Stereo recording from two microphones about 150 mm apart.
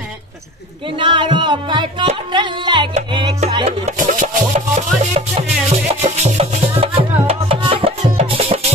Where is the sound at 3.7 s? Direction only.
55° right (ahead or behind).